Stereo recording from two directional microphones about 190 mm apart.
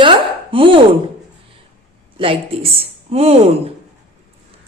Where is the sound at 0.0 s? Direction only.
25° right (ahead or behind).